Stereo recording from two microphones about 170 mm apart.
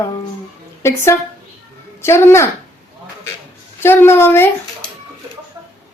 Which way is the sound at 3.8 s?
15° left (ahead or behind).